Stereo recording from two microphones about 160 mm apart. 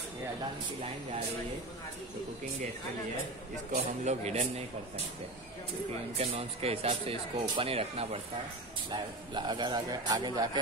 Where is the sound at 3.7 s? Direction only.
45° right (ahead or behind).